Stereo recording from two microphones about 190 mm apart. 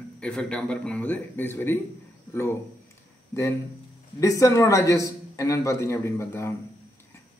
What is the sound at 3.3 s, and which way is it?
A man's voice, 15° left (ahead or behind).